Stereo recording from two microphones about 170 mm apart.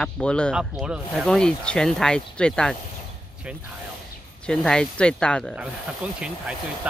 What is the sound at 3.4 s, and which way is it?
Speech, 5° right (ahead or behind).